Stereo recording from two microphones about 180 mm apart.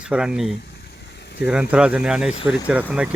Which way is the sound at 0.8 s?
70° left (ahead or behind).